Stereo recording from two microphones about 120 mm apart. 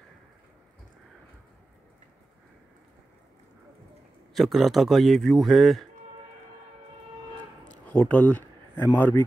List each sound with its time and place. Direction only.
4.3 s speech: centre (ahead or behind)
7.8 s a sound: 10° left (ahead or behind)
8.9 s speech: 15° left (ahead or behind)